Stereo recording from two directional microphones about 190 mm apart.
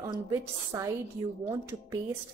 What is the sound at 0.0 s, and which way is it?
A woman's voice, 15° right (ahead or behind).